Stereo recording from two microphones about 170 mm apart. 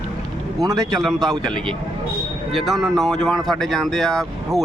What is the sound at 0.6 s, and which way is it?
Speech, 20° right (ahead or behind).